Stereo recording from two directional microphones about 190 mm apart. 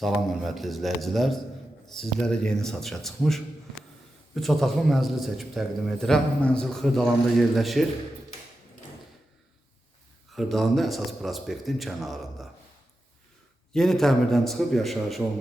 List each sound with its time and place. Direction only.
0.0 s a man's voice: centre (ahead or behind)
10.3 s a man's voice: centre (ahead or behind)
13.7 s a man's voice: centre (ahead or behind)